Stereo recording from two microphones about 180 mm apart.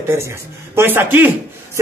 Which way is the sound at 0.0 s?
15° right (ahead or behind).